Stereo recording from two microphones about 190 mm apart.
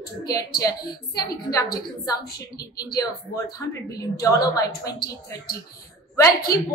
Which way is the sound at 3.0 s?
20° left (ahead or behind).